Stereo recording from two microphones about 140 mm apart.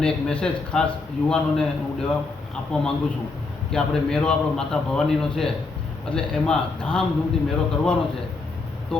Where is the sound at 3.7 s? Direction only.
5° left (ahead or behind).